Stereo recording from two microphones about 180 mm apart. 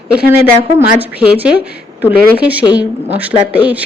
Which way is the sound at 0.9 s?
10° right (ahead or behind).